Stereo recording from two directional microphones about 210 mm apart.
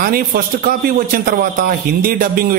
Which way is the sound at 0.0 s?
45° right (ahead or behind).